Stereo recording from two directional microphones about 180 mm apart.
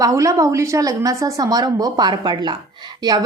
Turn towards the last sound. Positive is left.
turn(degrees=-25)  # may be behind; listen again after turning